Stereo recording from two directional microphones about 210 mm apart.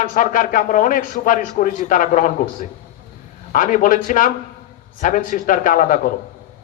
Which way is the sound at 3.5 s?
40° left (ahead or behind).